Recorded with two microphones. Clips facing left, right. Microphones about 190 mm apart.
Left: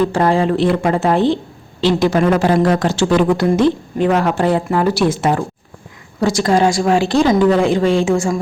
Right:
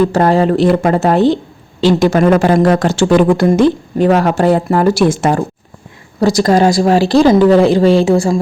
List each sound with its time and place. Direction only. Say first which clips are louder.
0.1 s a woman's voice: right 4 dB; 40° right (ahead or behind)